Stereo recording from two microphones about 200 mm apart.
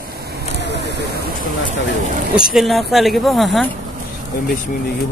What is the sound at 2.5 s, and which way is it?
Speech, centre (ahead or behind).